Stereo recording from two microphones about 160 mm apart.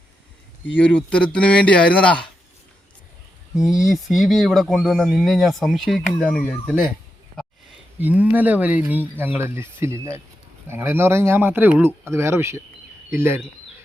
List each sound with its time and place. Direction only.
0.8 s speech: 10° left (ahead or behind)
3.5 s speech: centre (ahead or behind)
7.9 s speech: 10° right (ahead or behind)